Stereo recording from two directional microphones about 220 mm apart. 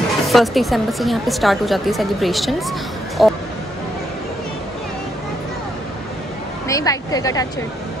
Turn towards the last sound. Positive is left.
turn(degrees=15)  # may be behind; listen again after turning